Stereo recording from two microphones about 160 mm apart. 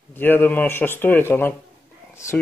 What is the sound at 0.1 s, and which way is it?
Speech, 10° left (ahead or behind).